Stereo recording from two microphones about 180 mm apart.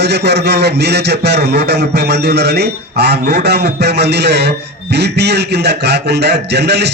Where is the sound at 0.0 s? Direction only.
65° right (ahead or behind).